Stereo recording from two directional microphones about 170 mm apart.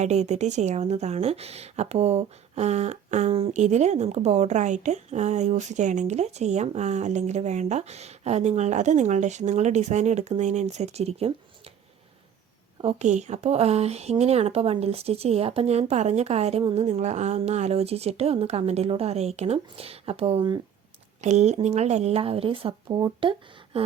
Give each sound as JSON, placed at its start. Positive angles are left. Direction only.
{"t": 0.0, "sound": "speech", "side_deg": -40}
{"t": 12.8, "sound": "speech", "side_deg": -40}